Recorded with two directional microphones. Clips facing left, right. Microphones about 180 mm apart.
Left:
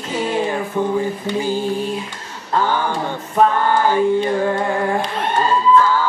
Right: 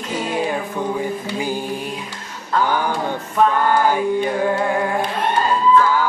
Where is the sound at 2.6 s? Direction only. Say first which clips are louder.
Even; 10° right (ahead or behind).